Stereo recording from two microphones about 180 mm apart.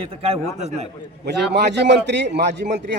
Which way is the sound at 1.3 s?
70° right (ahead or behind).